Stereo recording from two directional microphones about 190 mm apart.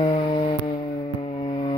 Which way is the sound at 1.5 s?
25° left (ahead or behind).